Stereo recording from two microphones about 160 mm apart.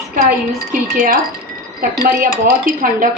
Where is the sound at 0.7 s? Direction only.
55° right (ahead or behind).